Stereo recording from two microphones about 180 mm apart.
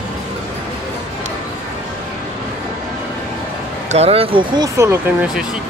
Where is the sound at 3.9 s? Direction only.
35° right (ahead or behind).